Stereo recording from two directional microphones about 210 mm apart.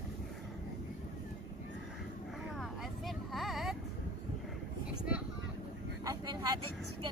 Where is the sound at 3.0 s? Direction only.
Centre (ahead or behind).